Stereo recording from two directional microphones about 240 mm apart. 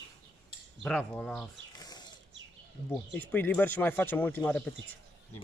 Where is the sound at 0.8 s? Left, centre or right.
Centre.